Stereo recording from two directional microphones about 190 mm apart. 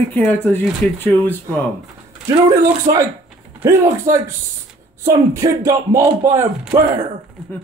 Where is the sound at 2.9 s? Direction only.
20° right (ahead or behind).